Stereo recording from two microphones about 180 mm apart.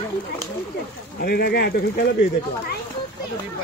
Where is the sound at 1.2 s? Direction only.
60° left (ahead or behind).